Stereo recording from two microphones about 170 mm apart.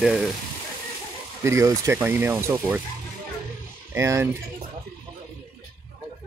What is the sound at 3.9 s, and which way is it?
Speech, 15° right (ahead or behind).